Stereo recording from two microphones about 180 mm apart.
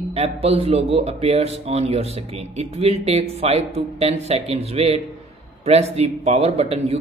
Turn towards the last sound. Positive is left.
turn(degrees=-35)  # may be behind; listen again after turning